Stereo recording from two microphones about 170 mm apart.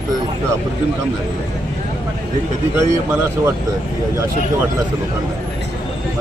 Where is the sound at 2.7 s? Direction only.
15° right (ahead or behind).